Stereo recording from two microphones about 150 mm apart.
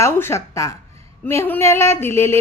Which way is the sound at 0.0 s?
15° left (ahead or behind).